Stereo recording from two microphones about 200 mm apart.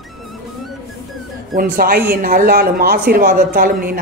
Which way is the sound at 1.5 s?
50° right (ahead or behind).